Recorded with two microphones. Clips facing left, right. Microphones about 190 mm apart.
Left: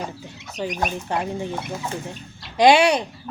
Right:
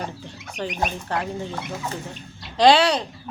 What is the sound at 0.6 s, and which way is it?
Speech, 10° left (ahead or behind).